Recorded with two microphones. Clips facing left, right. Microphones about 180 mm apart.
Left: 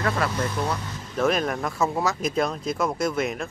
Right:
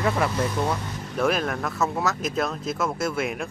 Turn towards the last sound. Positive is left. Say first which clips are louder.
# left 1 dB
turn(degrees=-5)  # may be behind; listen again after turning